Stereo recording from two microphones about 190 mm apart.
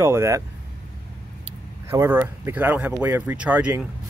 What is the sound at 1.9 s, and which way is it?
Speech, 10° right (ahead or behind).